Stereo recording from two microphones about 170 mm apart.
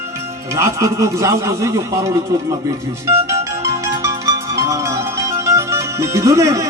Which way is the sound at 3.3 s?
20° right (ahead or behind).